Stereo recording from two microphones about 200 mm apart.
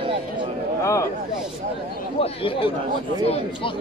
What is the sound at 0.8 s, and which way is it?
Speech, 15° left (ahead or behind).